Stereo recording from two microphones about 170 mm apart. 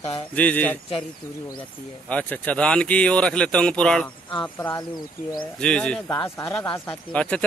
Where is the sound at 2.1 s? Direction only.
10° left (ahead or behind).